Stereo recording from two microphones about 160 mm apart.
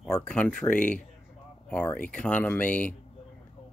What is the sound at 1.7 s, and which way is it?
Speech, 10° left (ahead or behind).